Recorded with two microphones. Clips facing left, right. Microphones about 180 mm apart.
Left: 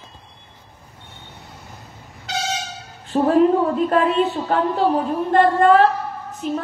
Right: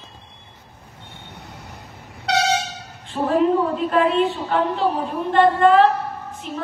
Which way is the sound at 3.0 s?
40° left (ahead or behind).